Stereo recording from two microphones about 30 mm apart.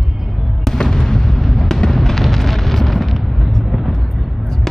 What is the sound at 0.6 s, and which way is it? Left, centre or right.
Fireworks, centre.